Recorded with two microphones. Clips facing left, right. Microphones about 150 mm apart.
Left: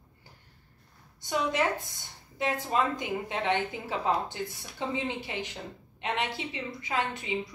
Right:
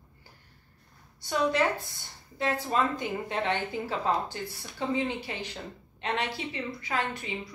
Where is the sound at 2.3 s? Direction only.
15° left (ahead or behind).